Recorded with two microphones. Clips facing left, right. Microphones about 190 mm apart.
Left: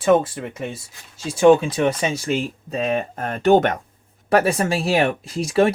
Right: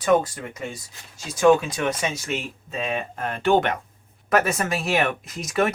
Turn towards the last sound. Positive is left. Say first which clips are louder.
# left 6 dB
turn(degrees=30)  # may be behind; listen again after turning